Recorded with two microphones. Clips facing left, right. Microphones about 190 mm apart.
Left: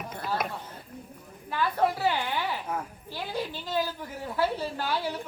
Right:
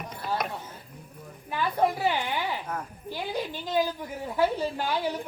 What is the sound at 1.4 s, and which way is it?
A woman's voice, 15° right (ahead or behind).